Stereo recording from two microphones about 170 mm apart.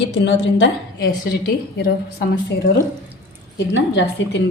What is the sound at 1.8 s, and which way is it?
Speech, 70° left (ahead or behind).